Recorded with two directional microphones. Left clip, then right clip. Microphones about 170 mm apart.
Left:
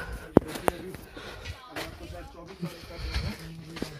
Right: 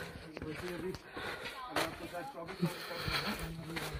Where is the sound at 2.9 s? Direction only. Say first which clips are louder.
Right 2 dB; 25° right (ahead or behind).